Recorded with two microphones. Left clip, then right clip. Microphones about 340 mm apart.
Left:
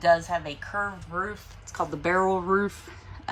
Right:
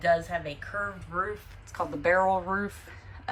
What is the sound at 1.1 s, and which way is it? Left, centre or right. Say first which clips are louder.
Speech: even; centre.